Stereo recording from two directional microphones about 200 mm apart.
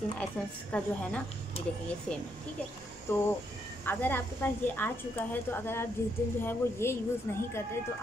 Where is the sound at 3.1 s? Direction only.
10° left (ahead or behind).